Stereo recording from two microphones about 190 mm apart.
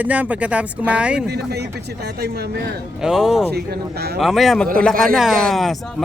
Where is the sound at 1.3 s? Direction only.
60° right (ahead or behind).